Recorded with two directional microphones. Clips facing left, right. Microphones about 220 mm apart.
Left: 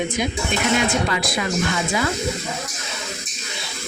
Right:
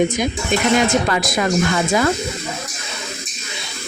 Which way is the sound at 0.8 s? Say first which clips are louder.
Right 4 dB; 45° right (ahead or behind).